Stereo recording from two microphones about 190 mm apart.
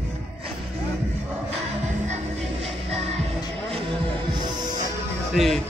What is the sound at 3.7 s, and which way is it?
Music, 30° right (ahead or behind).